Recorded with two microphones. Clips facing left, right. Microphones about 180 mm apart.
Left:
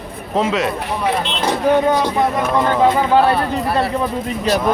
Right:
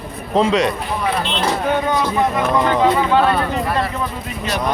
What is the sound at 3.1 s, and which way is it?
Speech, 30° left (ahead or behind).